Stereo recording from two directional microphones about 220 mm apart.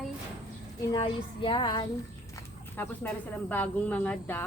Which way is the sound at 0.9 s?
20° left (ahead or behind).